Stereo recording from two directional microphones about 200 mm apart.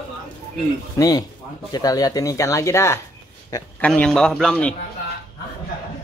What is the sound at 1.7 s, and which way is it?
A man's voice, 20° left (ahead or behind).